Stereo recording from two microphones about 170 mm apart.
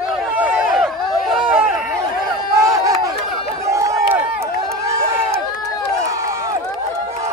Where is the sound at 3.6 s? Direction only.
20° right (ahead or behind).